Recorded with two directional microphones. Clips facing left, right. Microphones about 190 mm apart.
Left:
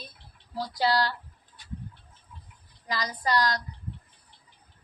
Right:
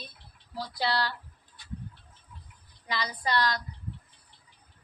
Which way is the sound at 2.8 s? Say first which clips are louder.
Left 2 dB; 40° left (ahead or behind).